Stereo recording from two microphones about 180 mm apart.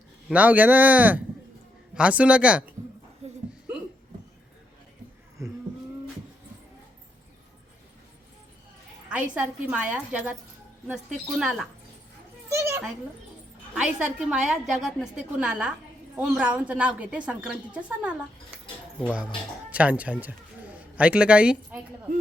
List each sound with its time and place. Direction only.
0.3 s a woman's voice: 10° right (ahead or behind)
3.2 s a sound: 35° right (ahead or behind)
9.0 s a woman's voice: 5° right (ahead or behind)
12.5 s a sound: 15° right (ahead or behind)
13.7 s a woman's voice: 5° right (ahead or behind)
19.7 s a man's voice: 10° right (ahead or behind)